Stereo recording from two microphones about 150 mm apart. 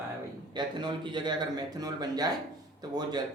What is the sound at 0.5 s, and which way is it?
Speech, 30° right (ahead or behind).